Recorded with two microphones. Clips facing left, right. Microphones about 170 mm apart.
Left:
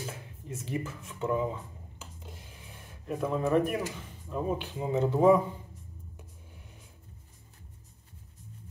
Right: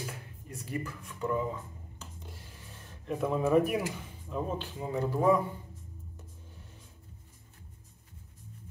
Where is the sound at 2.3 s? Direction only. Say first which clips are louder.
Left 1 dB; 15° left (ahead or behind).